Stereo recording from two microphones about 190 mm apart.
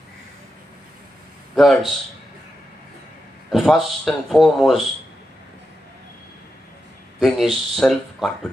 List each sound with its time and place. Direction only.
1.5 s a man's voice: centre (ahead or behind)
3.4 s speech: centre (ahead or behind)
7.2 s speech: centre (ahead or behind)